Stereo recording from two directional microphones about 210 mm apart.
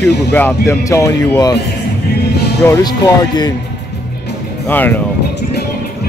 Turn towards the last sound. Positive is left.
turn(degrees=10)  # may be behind; listen again after turning